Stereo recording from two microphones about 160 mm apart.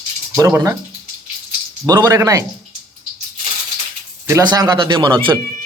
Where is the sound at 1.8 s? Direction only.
25° right (ahead or behind).